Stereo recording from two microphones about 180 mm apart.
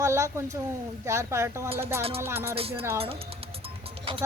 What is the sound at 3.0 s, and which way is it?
Music, 30° right (ahead or behind).